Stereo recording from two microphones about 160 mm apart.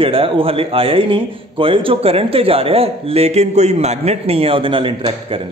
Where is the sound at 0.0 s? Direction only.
35° right (ahead or behind).